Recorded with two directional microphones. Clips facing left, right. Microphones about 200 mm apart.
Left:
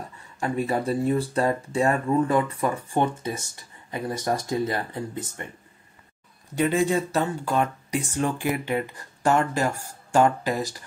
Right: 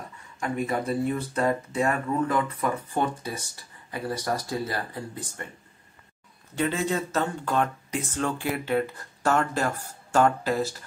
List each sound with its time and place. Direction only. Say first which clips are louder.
0.4 s speech: left 2 dB; 30° left (ahead or behind)
6.5 s speech: left 4 dB; 15° left (ahead or behind)